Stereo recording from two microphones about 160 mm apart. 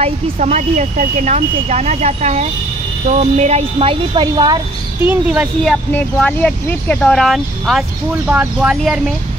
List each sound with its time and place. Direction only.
0.0 s speech: 45° right (ahead or behind); by 4.6 s 30° right (ahead or behind)
5.0 s speech: 10° right (ahead or behind)
6.1 s speech: 5° left (ahead or behind)